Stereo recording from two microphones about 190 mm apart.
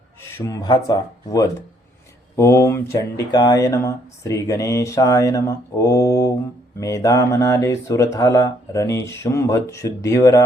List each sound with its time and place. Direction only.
0.2 s speech: 15° left (ahead or behind)